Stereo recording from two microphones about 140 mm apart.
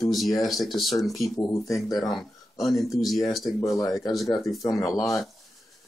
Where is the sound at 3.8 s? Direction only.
25° left (ahead or behind).